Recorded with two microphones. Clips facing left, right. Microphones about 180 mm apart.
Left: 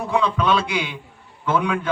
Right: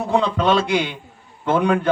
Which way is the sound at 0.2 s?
55° right (ahead or behind).